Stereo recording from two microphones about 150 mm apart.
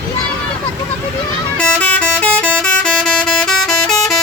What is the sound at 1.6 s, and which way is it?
Vehicle, 10° left (ahead or behind).